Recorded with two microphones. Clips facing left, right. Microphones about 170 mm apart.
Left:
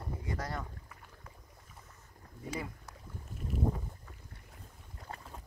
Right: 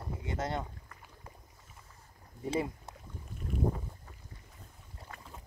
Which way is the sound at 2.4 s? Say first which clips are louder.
Right 7 dB; 25° right (ahead or behind).